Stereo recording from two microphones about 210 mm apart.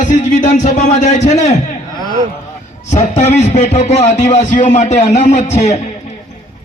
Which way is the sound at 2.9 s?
35° left (ahead or behind).